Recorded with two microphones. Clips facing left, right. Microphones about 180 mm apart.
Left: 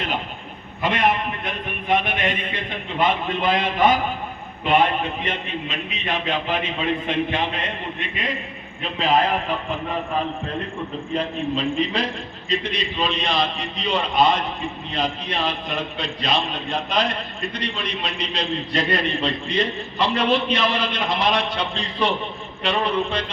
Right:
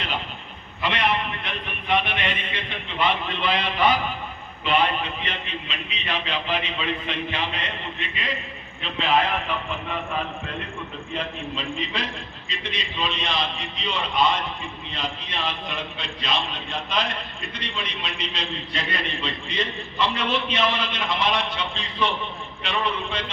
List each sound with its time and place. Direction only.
0.8 s a man's voice: 45° left (ahead or behind)
11.1 s a man's voice: 40° left (ahead or behind)